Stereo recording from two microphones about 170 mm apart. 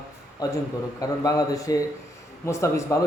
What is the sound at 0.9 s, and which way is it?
A man's voice, 20° left (ahead or behind).